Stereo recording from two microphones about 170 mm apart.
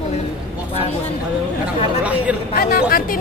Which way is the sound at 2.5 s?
60° left (ahead or behind).